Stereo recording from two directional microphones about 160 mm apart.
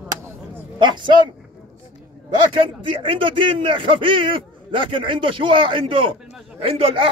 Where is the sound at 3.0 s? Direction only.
35° right (ahead or behind).